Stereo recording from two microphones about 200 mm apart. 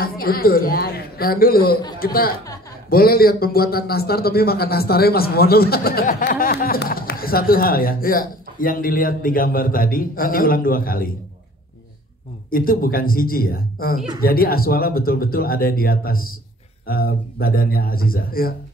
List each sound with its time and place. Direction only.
0.0 s a man's voice: 50° left (ahead or behind)
12.4 s a man's voice: 45° left (ahead or behind)